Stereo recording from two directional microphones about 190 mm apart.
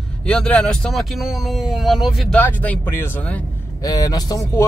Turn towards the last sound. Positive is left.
turn(degrees=20)  # may be behind; listen again after turning